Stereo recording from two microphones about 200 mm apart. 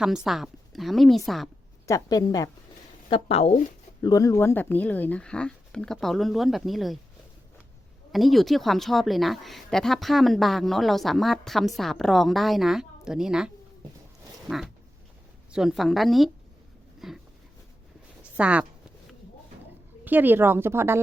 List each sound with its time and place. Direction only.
0.0 s a woman's voice: centre (ahead or behind)
1.9 s a woman's voice: 20° left (ahead or behind)
3.1 s a woman's voice: 30° left (ahead or behind)
4.0 s a woman's voice: 15° left (ahead or behind); by 7.0 s centre (ahead or behind)
8.1 s a woman's voice: centre (ahead or behind)
14.4 s a sound: centre (ahead or behind)
15.5 s a woman's voice: centre (ahead or behind)
18.2 s a sound: 5° right (ahead or behind)
20.1 s speech: 10° right (ahead or behind)